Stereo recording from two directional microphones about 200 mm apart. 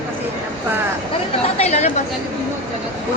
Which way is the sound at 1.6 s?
35° left (ahead or behind).